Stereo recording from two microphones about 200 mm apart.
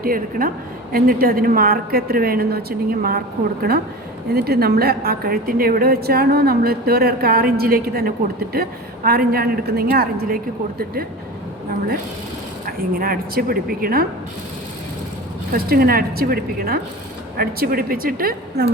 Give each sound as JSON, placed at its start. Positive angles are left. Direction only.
{"t": 0.0, "sound": "a woman's voice", "side_deg": -45}
{"t": 4.3, "sound": "a woman's voice", "side_deg": -50}
{"t": 12.6, "sound": "a woman's voice", "side_deg": -45}
{"t": 15.5, "sound": "a woman's voice", "side_deg": -50}